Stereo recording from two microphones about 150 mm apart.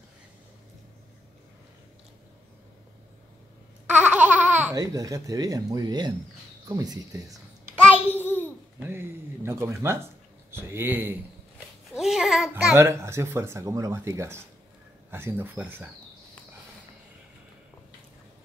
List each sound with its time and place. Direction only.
3.9 s laughter: 10° right (ahead or behind)
4.7 s speech: 25° right (ahead or behind)
7.7 s a sound: 10° left (ahead or behind)
8.7 s speech: 15° right (ahead or behind)
11.9 s a sound: 5° right (ahead or behind)
12.7 s speech: 20° right (ahead or behind)